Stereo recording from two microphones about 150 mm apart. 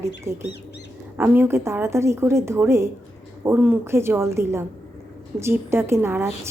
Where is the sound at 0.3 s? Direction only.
20° right (ahead or behind).